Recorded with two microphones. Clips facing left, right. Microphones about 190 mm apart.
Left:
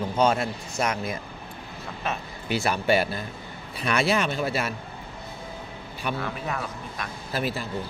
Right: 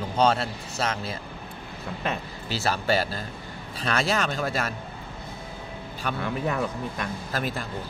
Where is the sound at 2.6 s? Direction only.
35° right (ahead or behind).